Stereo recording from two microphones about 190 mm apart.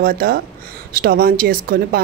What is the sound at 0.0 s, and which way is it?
Speech, 45° right (ahead or behind).